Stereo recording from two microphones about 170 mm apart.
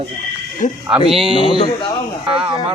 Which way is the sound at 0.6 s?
45° left (ahead or behind).